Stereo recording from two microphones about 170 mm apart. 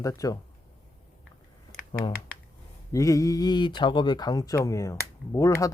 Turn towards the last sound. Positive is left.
turn(degrees=15)  # may be behind; listen again after turning